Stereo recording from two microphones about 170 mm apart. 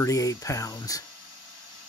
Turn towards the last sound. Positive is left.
turn(degrees=20)  # may be behind; listen again after turning